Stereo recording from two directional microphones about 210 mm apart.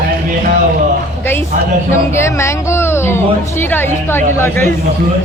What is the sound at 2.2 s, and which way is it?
Speech, 10° left (ahead or behind).